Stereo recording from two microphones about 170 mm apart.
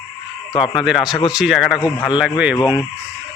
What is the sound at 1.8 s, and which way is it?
Speech, 20° left (ahead or behind).